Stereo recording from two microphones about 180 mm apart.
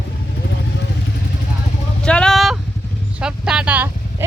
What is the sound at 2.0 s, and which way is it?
Vehicle, 5° left (ahead or behind).